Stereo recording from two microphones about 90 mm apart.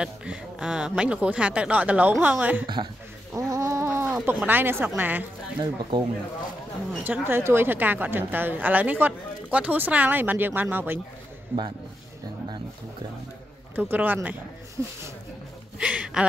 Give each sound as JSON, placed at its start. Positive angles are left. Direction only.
{"t": 0.0, "sound": "speech", "side_deg": -10}
{"t": 2.6, "sound": "speech", "side_deg": -65}
{"t": 3.3, "sound": "a sound", "side_deg": -40}
{"t": 4.5, "sound": "a woman's voice", "side_deg": -25}
{"t": 5.6, "sound": "speech", "side_deg": -55}
{"t": 7.1, "sound": "a woman's voice", "side_deg": -25}
{"t": 13.7, "sound": "a woman's voice", "side_deg": -20}
{"t": 15.8, "sound": "speech", "side_deg": -10}